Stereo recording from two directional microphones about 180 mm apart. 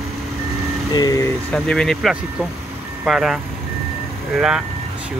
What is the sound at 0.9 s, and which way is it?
Speech, 20° left (ahead or behind).